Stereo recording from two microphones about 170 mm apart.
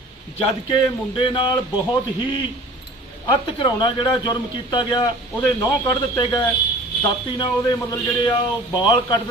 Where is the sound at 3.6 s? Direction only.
30° left (ahead or behind).